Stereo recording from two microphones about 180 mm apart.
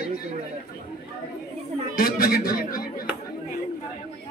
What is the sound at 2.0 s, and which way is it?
Speech, 55° left (ahead or behind).